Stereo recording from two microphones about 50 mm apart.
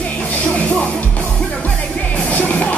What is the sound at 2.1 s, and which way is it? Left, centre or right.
Music, left.